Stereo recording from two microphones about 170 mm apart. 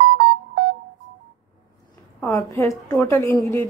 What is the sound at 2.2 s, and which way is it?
A woman's voice, 20° left (ahead or behind).